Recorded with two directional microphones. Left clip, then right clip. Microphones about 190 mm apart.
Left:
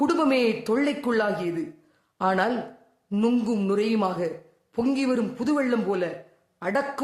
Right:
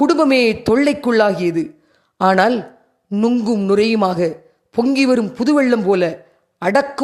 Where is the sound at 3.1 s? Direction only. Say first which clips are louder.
Right 7 dB; 25° right (ahead or behind).